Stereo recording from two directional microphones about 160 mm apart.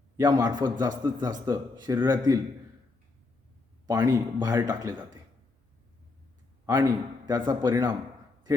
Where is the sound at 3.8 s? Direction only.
25° right (ahead or behind).